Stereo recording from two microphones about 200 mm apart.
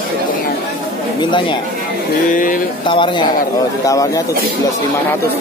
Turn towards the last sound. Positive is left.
turn(degrees=15)  # may be behind; listen again after turning